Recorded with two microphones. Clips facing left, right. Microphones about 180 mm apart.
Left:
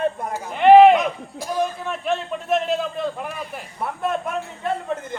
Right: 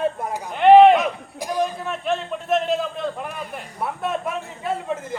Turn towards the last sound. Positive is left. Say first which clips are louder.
# left 1 dB
turn(degrees=-5)  # may be behind; listen again after turning